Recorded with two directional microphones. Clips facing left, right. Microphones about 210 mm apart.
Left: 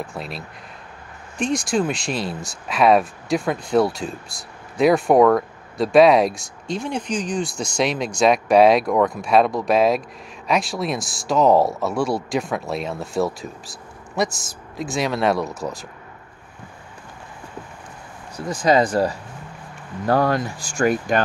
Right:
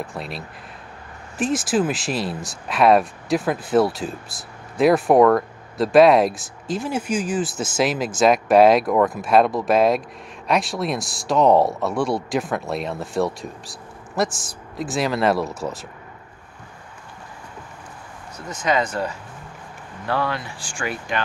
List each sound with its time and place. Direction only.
0.0 s speech: centre (ahead or behind)
1.4 s speech: 5° right (ahead or behind)
18.5 s speech: 35° left (ahead or behind)